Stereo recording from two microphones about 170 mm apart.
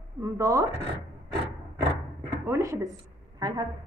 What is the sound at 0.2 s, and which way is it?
Speech, 20° right (ahead or behind).